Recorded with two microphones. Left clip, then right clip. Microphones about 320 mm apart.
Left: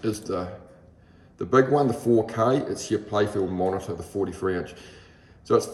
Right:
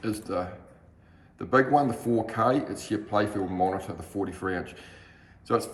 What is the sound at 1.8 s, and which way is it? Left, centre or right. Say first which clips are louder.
Speech: left 3 dB; right.